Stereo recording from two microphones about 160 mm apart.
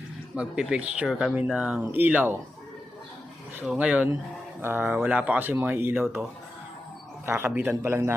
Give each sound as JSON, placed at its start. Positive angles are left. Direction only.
{"t": 0.3, "sound": "speech", "side_deg": -5}
{"t": 3.6, "sound": "speech", "side_deg": -10}
{"t": 7.3, "sound": "speech", "side_deg": -15}